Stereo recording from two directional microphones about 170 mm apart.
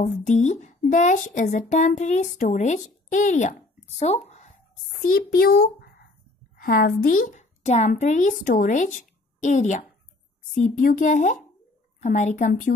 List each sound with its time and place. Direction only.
0.0 s speech: 45° left (ahead or behind)
5.0 s a child's voice: 60° left (ahead or behind)